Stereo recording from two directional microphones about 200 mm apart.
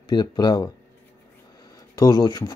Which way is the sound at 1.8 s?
20° left (ahead or behind).